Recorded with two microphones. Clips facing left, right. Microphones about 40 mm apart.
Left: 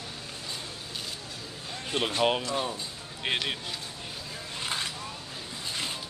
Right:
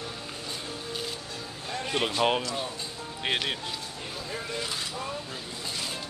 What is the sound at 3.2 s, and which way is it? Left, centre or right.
Speech, centre.